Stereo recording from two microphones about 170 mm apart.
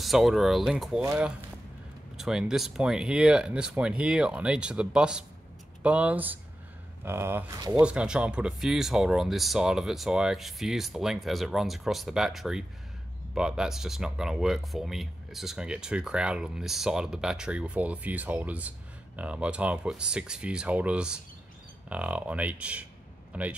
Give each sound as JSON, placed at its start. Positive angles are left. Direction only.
{"t": 0.0, "sound": "speech", "side_deg": 0}
{"t": 7.8, "sound": "speech", "side_deg": -5}